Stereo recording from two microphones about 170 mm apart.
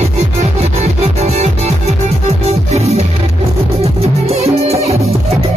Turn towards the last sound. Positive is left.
turn(degrees=-35)  # may be behind; listen again after turning